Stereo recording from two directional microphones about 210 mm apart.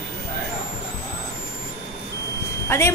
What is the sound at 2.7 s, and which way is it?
Speech, 10° left (ahead or behind).